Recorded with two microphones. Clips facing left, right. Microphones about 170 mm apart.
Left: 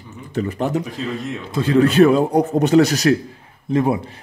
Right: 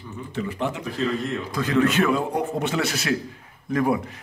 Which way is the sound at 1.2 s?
25° left (ahead or behind).